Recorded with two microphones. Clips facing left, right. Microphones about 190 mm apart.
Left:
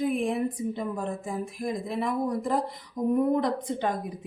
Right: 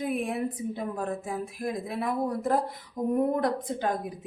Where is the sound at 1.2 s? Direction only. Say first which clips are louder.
Left 1 dB; 5° right (ahead or behind).